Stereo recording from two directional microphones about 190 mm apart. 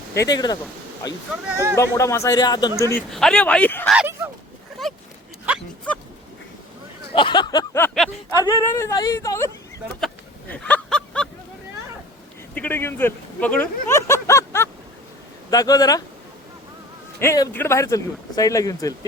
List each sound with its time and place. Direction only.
0.2 s speech: 20° left (ahead or behind)
1.5 s speech: 15° right (ahead or behind)
1.7 s speech: 15° left (ahead or behind)
3.1 s speech: 5° left (ahead or behind)
3.9 s speech: 10° right (ahead or behind)
4.8 s vehicle: centre (ahead or behind)
7.1 s a sound: 25° left (ahead or behind)
8.3 s speech: 20° left (ahead or behind)
10.5 s a sound: 5° left (ahead or behind)
12.5 s speech: 10° left (ahead or behind)
17.2 s speech: 15° left (ahead or behind)